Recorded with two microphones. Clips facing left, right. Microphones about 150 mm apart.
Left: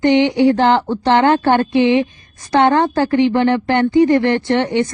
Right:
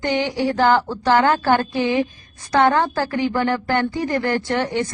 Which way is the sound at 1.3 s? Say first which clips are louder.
Left 5 dB; 60° left (ahead or behind).